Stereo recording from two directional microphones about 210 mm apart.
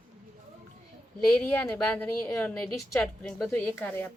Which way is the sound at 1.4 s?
10° left (ahead or behind).